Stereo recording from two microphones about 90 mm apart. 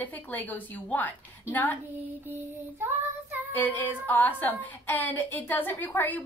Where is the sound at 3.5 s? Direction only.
20° left (ahead or behind).